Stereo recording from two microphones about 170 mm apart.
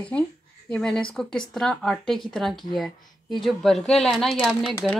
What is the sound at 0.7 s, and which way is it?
Speech, 5° left (ahead or behind).